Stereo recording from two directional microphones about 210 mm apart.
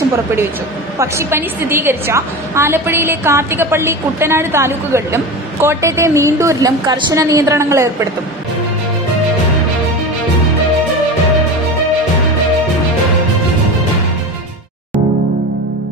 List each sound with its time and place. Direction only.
0.9 s a woman's voice: 15° right (ahead or behind)